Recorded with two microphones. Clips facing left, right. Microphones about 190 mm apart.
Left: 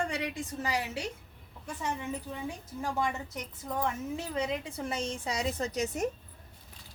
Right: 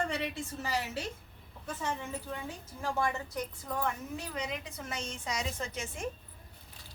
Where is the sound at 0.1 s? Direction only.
15° left (ahead or behind).